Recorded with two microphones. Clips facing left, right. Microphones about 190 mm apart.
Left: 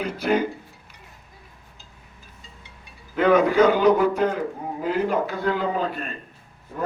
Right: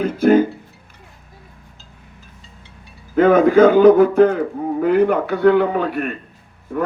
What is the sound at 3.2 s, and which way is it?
Speech, 50° right (ahead or behind).